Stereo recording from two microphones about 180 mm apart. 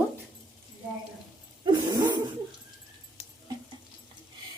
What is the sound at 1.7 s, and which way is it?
Dog, 20° right (ahead or behind).